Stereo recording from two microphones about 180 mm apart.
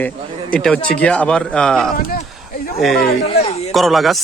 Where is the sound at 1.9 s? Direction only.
50° left (ahead or behind).